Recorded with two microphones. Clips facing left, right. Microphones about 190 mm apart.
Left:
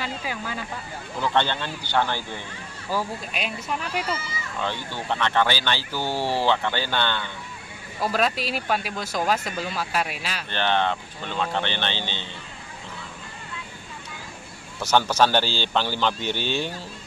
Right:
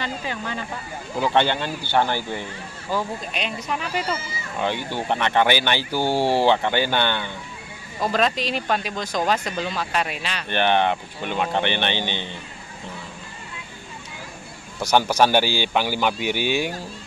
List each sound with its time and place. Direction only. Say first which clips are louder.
0.0 s speech: right 2 dB; 5° left (ahead or behind)
1.2 s speech: right 3 dB; 15° right (ahead or behind)
2.9 s speech: right 2 dB; 5° left (ahead or behind)
4.6 s speech: right 5 dB; 15° right (ahead or behind)
8.0 s speech: right 2 dB; 5° left (ahead or behind)
10.5 s speech: right 4 dB; 15° right (ahead or behind)
14.8 s speech: right 2 dB; 15° right (ahead or behind)